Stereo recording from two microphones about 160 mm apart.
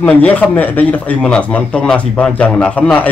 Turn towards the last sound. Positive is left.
turn(degrees=10)  # may be behind; listen again after turning